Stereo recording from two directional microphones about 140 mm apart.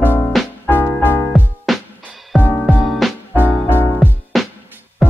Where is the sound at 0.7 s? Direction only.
15° left (ahead or behind).